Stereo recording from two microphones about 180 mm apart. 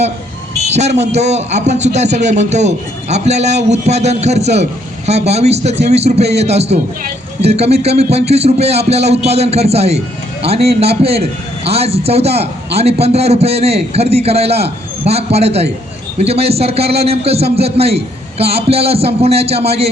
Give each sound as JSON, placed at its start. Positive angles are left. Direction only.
{"t": 0.7, "sound": "a man's voice", "side_deg": -40}